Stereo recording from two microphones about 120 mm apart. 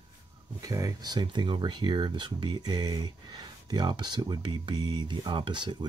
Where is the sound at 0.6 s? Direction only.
30° right (ahead or behind).